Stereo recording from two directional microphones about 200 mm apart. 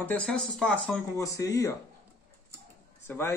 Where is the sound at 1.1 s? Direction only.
15° left (ahead or behind).